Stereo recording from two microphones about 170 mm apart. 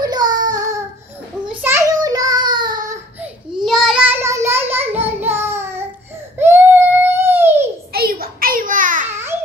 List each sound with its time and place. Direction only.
0.0 s child singing: 25° right (ahead or behind)
3.2 s child singing: centre (ahead or behind)
6.3 s baby cry: 15° right (ahead or behind)
7.9 s a sound: 60° right (ahead or behind)
9.1 s babbling: 15° right (ahead or behind)